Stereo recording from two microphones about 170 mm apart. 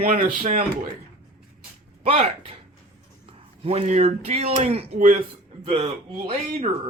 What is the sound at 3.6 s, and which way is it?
Speech, 35° right (ahead or behind).